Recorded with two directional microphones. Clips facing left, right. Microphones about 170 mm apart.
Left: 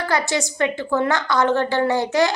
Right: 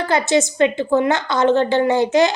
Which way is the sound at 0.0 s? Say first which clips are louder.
Right 5 dB; 20° right (ahead or behind).